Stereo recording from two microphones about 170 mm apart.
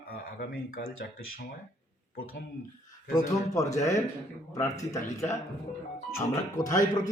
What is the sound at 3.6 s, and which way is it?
Speech, 20° left (ahead or behind).